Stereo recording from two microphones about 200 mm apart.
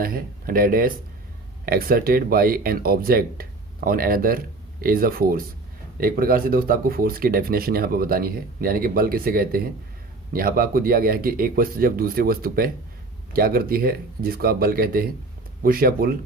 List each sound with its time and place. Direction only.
0.0 s speech: 45° right (ahead or behind)